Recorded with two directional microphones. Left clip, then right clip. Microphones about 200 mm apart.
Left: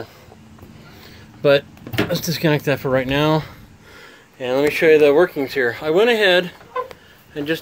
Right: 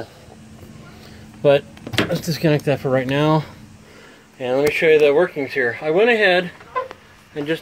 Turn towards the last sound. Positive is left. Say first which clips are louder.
# even
turn(degrees=15)  # may be behind; listen again after turning